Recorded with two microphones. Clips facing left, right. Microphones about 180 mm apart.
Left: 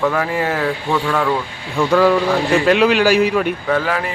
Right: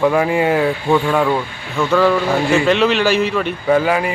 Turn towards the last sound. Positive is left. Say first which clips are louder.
# right 4 dB
turn(degrees=-10)  # may be behind; listen again after turning